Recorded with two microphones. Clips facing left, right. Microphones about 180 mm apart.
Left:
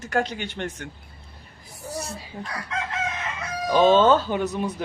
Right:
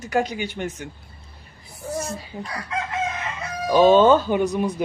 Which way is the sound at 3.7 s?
10° right (ahead or behind).